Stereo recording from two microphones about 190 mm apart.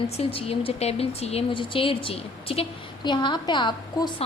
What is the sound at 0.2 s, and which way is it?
Speech, 30° left (ahead or behind).